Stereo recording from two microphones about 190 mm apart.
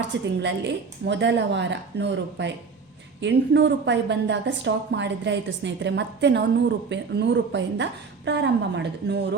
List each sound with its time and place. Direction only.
0.1 s a woman's voice: 65° right (ahead or behind)